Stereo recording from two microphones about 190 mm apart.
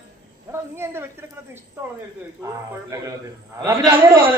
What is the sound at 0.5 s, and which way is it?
Speech, 15° right (ahead or behind).